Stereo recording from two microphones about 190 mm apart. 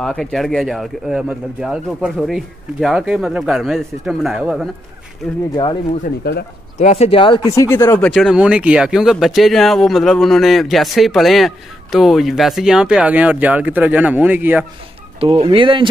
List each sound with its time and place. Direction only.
0.0 s speech: centre (ahead or behind)
6.2 s speech: 55° left (ahead or behind)
6.8 s speech: 35° left (ahead or behind)
7.5 s speech: 15° left (ahead or behind)
8.1 s speech: centre (ahead or behind)
15.1 s speech: 30° right (ahead or behind)